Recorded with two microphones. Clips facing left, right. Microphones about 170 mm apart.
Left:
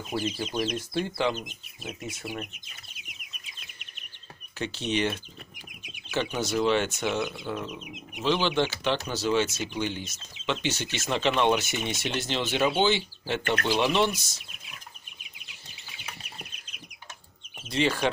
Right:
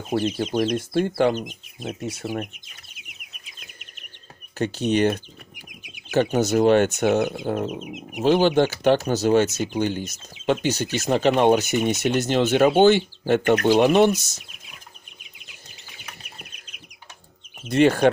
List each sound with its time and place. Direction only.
0.4 s speech: 55° right (ahead or behind)
2.1 s speech: 40° right (ahead or behind)
4.6 s speech: 45° right (ahead or behind)
17.6 s speech: 50° right (ahead or behind)